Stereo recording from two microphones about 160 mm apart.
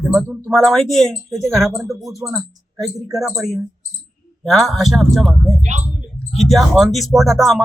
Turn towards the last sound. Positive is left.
turn(degrees=0)  # may be behind; listen again after turning